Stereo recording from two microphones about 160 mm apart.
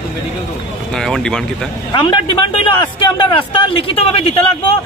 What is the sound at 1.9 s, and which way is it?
Speech, 30° left (ahead or behind).